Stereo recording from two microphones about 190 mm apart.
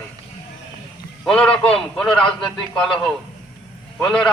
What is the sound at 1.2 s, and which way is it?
A man's voice, 5° left (ahead or behind).